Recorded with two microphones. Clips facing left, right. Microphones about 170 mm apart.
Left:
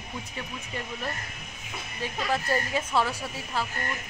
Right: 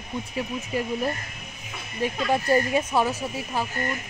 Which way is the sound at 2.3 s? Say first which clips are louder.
Right 6 dB; 15° right (ahead or behind).